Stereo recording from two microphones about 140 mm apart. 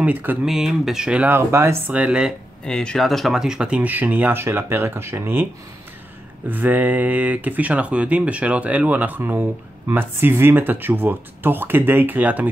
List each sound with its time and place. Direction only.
0.0 s speech: 10° right (ahead or behind)
2.6 s speech: 5° left (ahead or behind); by 5.5 s 15° right (ahead or behind)
6.5 s speech: 10° right (ahead or behind)